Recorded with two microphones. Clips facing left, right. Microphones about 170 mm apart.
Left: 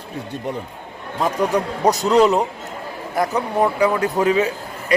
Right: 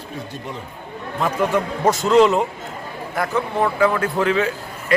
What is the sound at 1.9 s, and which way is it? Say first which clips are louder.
Speech: even; 40° left (ahead or behind).